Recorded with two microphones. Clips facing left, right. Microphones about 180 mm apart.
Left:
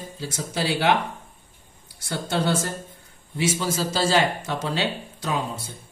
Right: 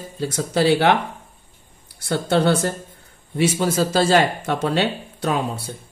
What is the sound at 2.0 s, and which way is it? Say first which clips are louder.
A man's voice: right 7 dB; 60° right (ahead or behind).